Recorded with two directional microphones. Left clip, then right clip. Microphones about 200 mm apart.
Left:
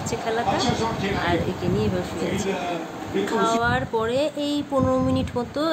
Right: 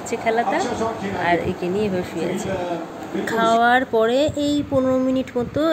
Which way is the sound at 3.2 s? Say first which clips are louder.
Right 5 dB; 30° right (ahead or behind).